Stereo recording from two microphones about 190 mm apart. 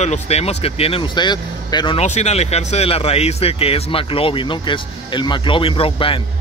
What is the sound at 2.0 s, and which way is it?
Speech, 35° left (ahead or behind).